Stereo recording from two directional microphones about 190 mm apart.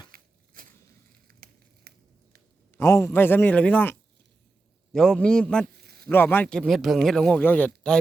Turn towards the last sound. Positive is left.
turn(degrees=5)  # may be behind; listen again after turning